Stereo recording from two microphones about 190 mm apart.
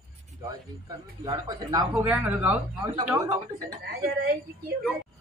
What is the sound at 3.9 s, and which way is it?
Speech, 55° right (ahead or behind).